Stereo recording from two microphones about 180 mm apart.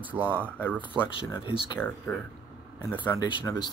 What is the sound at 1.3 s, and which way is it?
Speech, 25° left (ahead or behind).